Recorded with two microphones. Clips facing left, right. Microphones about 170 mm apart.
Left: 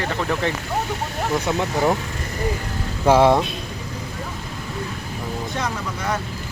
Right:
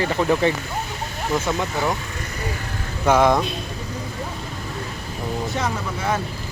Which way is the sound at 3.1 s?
30° left (ahead or behind).